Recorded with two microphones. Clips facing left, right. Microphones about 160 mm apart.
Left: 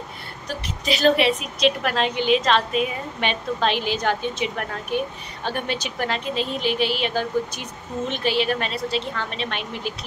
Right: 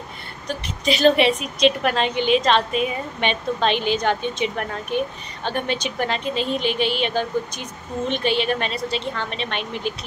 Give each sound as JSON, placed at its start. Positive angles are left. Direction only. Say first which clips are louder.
{"t": 0.5, "sound": "a woman's voice", "louder": "right 3 dB", "side_deg": 0}